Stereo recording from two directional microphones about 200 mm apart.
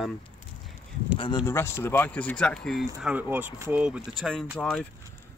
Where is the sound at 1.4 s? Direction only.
10° left (ahead or behind).